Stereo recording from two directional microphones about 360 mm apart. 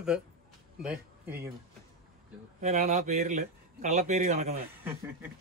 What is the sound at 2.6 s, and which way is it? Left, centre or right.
Speech, centre.